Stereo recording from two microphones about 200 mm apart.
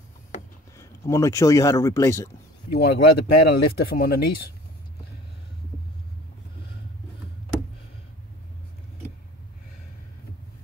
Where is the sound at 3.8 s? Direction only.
50° left (ahead or behind).